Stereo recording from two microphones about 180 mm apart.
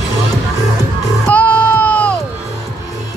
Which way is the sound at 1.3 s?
10° left (ahead or behind).